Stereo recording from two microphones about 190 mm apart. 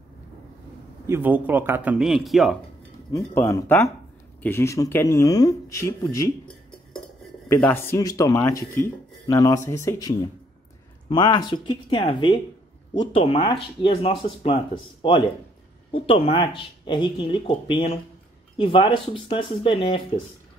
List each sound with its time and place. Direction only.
1.0 s speech: 10° right (ahead or behind)
3.1 s speech: 15° left (ahead or behind)
7.4 s speech: 15° left (ahead or behind)